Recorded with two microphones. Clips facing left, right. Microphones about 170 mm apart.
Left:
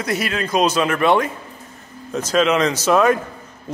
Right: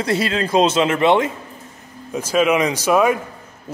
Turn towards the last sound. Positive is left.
turn(degrees=-10)  # may be behind; listen again after turning